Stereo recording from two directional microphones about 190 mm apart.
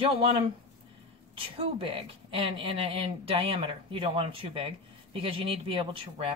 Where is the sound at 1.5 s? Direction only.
30° right (ahead or behind).